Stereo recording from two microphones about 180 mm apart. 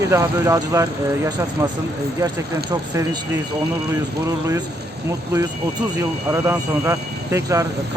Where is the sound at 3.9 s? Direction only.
15° right (ahead or behind).